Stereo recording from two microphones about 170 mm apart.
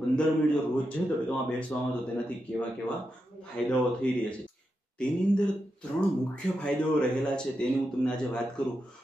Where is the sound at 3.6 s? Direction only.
5° left (ahead or behind).